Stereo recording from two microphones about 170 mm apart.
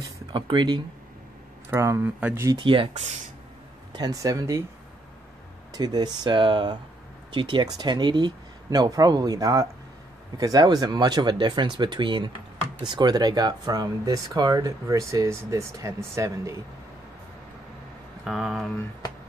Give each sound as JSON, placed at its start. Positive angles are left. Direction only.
{"t": 0.0, "sound": "a sound", "side_deg": -30}
{"t": 1.7, "sound": "speech", "side_deg": -15}
{"t": 2.6, "sound": "speech", "side_deg": -30}
{"t": 3.9, "sound": "speech", "side_deg": -20}
{"t": 5.7, "sound": "speech", "side_deg": -25}
{"t": 18.2, "sound": "a sound", "side_deg": 0}